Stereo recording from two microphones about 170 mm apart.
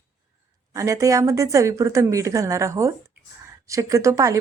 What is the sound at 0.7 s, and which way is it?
Speech, 20° right (ahead or behind).